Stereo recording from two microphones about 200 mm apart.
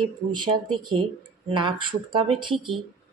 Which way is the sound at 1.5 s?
25° right (ahead or behind).